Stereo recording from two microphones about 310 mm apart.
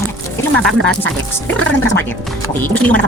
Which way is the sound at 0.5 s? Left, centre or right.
Centre.